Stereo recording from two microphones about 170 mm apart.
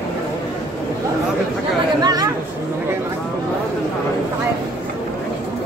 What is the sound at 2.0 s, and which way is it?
Chatter, 25° right (ahead or behind).